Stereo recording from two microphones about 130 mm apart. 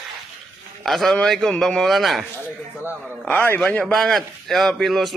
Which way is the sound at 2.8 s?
15° right (ahead or behind).